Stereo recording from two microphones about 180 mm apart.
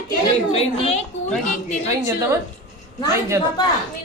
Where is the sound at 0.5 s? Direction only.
35° left (ahead or behind).